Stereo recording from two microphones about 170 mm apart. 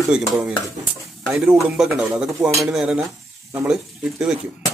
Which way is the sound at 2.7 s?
5° right (ahead or behind).